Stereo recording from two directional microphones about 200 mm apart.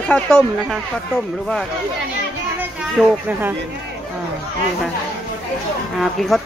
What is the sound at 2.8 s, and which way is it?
Speech, 10° right (ahead or behind).